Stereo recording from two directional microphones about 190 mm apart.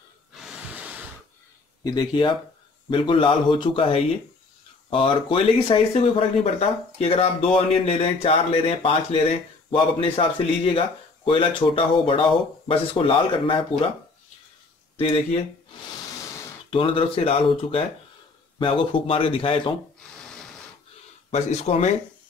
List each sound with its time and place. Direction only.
0.3 s a sound: 5° right (ahead or behind)
1.8 s speech: 20° left (ahead or behind)
16.7 s speech: 30° left (ahead or behind)
21.3 s speech: 35° left (ahead or behind)